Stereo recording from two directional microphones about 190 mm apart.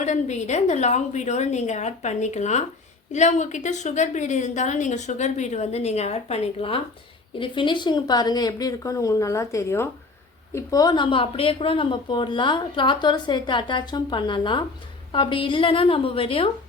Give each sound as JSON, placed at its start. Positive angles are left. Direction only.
{"t": 0.0, "sound": "a woman's voice", "side_deg": 40}